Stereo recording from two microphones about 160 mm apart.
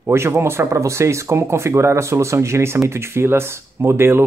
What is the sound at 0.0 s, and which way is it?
Speech, 15° right (ahead or behind).